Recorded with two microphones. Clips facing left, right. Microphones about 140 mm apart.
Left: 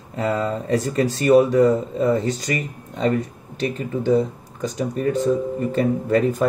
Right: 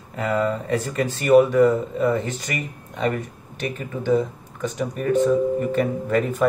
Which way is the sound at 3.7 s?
35° left (ahead or behind).